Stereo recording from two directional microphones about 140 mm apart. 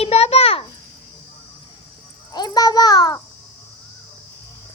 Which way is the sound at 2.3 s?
30° left (ahead or behind).